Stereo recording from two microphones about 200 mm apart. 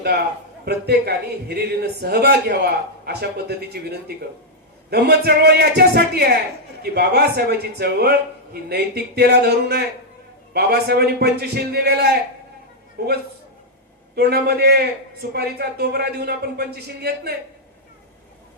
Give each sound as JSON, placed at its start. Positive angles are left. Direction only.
{"t": 0.6, "sound": "a man's voice", "side_deg": -55}
{"t": 14.2, "sound": "a man's voice", "side_deg": -50}